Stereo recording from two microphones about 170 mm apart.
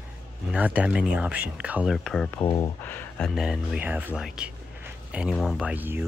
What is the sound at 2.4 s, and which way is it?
Speech, 25° left (ahead or behind).